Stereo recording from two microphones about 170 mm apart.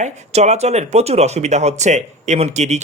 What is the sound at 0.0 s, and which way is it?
Speech, 40° right (ahead or behind).